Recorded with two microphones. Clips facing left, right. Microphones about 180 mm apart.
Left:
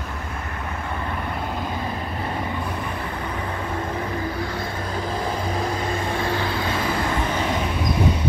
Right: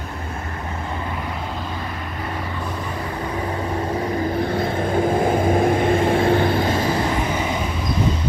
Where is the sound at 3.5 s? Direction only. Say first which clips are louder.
Right 4 dB; 30° right (ahead or behind).